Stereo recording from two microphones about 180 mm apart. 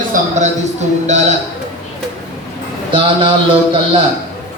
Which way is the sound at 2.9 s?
25° right (ahead or behind).